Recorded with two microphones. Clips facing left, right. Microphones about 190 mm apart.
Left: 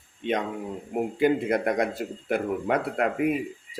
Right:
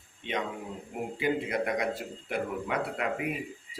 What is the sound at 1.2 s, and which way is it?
Speech, 50° left (ahead or behind).